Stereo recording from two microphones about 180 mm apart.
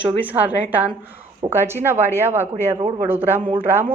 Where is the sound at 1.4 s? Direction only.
25° right (ahead or behind).